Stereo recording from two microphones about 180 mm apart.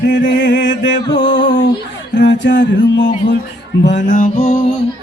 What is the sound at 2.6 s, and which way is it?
Music, 90° left.